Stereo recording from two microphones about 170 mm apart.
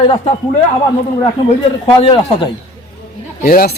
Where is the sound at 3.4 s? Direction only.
60° left (ahead or behind).